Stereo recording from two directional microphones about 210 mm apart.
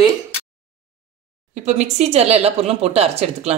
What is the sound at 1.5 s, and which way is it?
Speech, 35° right (ahead or behind).